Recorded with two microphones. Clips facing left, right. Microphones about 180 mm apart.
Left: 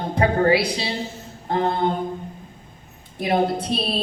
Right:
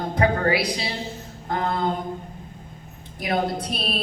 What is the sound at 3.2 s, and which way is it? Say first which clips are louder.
Speech: left 4 dB; 30° left (ahead or behind).